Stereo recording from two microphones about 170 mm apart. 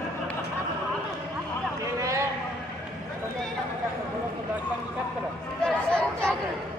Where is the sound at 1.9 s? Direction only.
20° right (ahead or behind).